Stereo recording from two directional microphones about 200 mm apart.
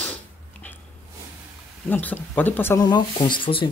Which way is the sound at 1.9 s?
10° left (ahead or behind).